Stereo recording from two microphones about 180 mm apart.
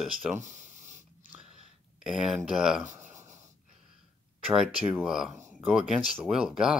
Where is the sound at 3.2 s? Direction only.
40° right (ahead or behind).